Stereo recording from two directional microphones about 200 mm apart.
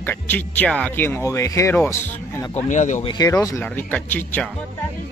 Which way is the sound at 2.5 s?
35° left (ahead or behind).